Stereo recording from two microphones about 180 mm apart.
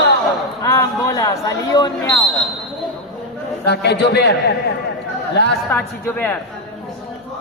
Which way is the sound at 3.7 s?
65° left (ahead or behind).